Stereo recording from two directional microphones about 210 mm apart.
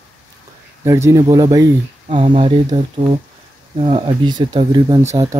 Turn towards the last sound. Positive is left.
turn(degrees=-20)  # may be behind; listen again after turning